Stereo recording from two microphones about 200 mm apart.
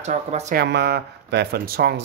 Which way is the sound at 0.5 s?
55° right (ahead or behind).